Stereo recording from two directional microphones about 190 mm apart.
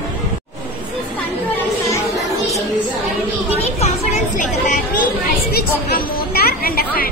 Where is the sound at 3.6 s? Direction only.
35° left (ahead or behind).